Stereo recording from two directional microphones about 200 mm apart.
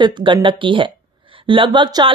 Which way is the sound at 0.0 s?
25° right (ahead or behind).